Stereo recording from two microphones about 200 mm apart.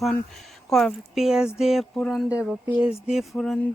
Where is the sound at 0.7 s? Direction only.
Centre (ahead or behind).